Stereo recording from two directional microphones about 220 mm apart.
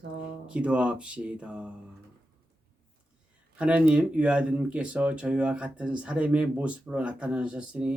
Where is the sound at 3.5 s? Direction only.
5° right (ahead or behind).